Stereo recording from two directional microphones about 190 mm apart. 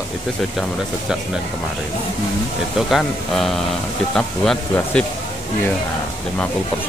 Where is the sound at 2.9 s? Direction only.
Centre (ahead or behind).